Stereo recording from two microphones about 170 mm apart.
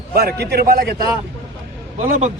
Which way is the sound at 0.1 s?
65° right (ahead or behind).